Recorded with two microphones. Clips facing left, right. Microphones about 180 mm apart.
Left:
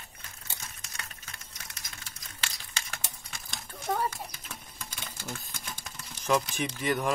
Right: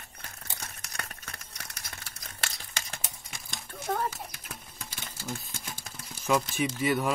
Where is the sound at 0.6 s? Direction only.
65° right (ahead or behind).